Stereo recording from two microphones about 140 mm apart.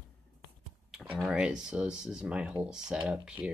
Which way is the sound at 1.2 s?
5° right (ahead or behind).